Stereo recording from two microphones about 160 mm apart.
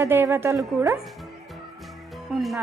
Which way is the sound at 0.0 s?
15° right (ahead or behind).